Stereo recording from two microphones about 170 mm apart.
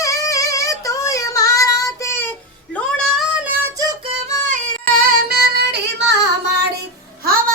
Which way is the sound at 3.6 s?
20° right (ahead or behind).